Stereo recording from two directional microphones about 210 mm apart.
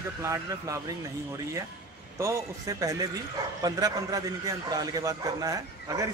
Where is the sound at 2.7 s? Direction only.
15° right (ahead or behind).